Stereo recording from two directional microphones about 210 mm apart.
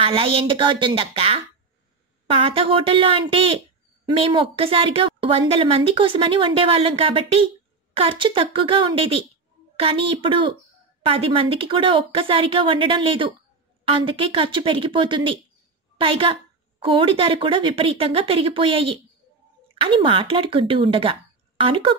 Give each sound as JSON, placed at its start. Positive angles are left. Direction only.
{"t": 0.0, "sound": "a woman's voice", "side_deg": -25}